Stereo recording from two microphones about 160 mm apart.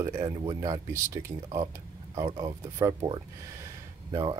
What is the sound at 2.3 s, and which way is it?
Speech, 30° right (ahead or behind).